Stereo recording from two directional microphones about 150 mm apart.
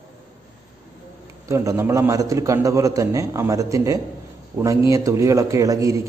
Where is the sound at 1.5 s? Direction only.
20° right (ahead or behind).